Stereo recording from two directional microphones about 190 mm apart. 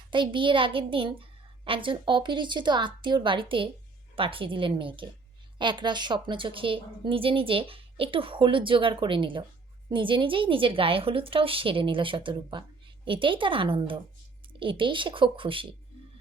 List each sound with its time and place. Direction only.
0.1 s a woman's voice: 25° right (ahead or behind)